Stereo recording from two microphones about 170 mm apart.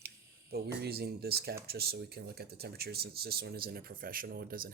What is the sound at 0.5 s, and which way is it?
Speech, 70° right (ahead or behind).